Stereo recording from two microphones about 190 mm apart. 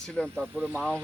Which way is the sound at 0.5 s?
10° right (ahead or behind).